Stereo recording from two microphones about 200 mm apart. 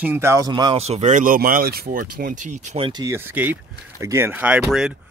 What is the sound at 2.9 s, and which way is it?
Speech, 15° right (ahead or behind).